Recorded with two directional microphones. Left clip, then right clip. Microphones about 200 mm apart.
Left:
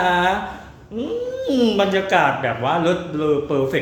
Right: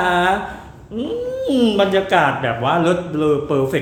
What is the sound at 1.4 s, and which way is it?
Speech, centre (ahead or behind).